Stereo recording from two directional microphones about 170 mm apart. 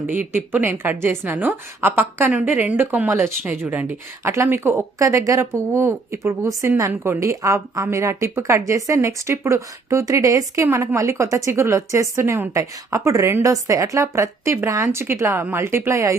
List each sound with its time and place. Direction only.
0.1 s a woman's voice: 10° right (ahead or behind)